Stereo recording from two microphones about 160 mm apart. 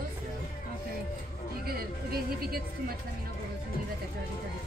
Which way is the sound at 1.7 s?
70° right (ahead or behind).